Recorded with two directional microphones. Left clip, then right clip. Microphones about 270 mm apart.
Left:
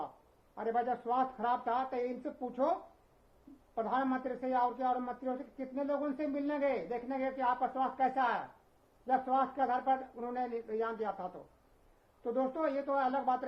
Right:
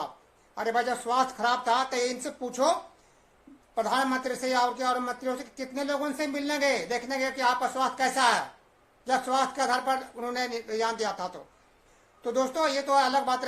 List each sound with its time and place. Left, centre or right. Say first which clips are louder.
0.5 s speech: right 6 dB; centre
3.8 s speech: right 7 dB; centre